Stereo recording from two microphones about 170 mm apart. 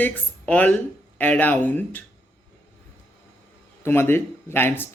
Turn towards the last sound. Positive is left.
turn(degrees=10)  # may be behind; listen again after turning